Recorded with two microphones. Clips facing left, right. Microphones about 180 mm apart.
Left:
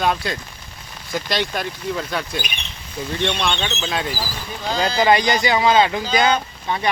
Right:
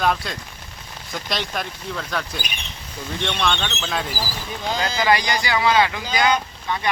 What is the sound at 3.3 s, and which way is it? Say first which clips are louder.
Speech: right 1 dB; 10° left (ahead or behind).